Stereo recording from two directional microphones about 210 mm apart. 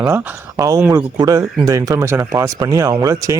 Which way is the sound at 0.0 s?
15° right (ahead or behind).